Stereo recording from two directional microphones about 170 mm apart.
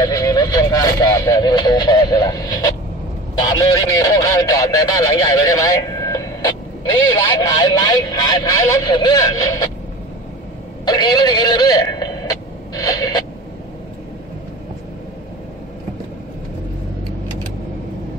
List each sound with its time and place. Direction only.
0.0 s a sound: 20° left (ahead or behind)
3.4 s speech: 20° left (ahead or behind)
10.9 s speech: 25° left (ahead or behind)